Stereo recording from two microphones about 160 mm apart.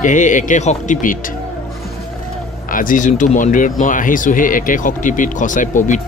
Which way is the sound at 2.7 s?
55° left (ahead or behind).